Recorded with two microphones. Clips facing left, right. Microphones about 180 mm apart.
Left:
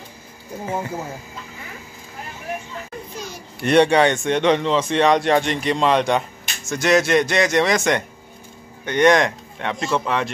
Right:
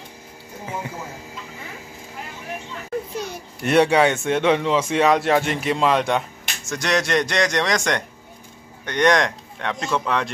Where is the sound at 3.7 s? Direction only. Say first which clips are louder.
Left 1 dB; 5° right (ahead or behind).